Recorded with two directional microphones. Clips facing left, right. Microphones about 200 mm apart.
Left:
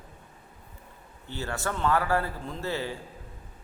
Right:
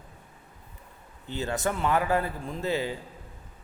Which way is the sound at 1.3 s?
20° right (ahead or behind).